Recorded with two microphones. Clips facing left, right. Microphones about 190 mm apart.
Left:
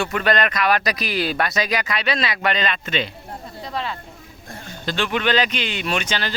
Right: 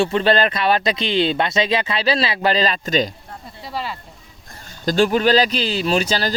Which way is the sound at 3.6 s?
5° right (ahead or behind).